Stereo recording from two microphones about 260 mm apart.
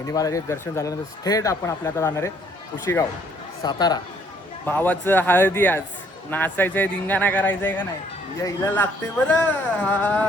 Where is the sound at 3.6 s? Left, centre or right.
Centre.